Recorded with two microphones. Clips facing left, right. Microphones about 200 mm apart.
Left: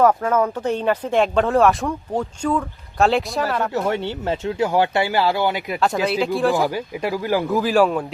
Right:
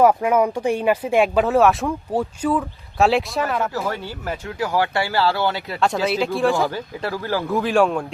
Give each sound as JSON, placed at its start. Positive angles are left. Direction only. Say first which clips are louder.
{"t": 0.0, "sound": "speech", "louder": "right 1 dB", "side_deg": -10}
{"t": 3.8, "sound": "speech", "louder": "left 5 dB", "side_deg": 25}
{"t": 6.1, "sound": "speech", "louder": "left 1 dB", "side_deg": 0}
{"t": 6.7, "sound": "speech", "louder": "left 3 dB", "side_deg": 15}
{"t": 7.4, "sound": "speech", "louder": "even", "side_deg": 0}